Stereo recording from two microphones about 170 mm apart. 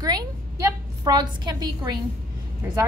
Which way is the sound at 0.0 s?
20° right (ahead or behind).